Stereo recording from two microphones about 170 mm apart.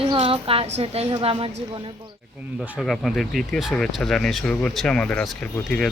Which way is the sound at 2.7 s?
Centre (ahead or behind).